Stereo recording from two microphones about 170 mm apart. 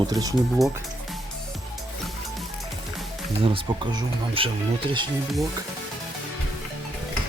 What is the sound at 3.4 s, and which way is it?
Speech, 30° right (ahead or behind).